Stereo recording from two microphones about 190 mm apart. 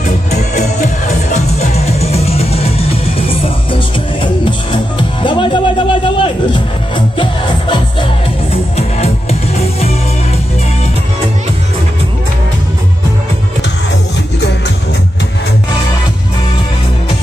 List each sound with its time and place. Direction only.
0.3 s music: 40° left (ahead or behind)
4.2 s music: 25° left (ahead or behind)